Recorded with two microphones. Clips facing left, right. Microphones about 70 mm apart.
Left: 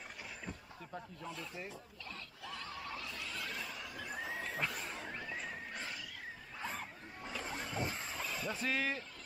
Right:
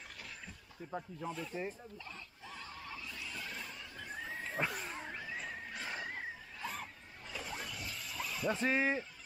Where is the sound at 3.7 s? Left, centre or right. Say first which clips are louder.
Left 2 dB; centre.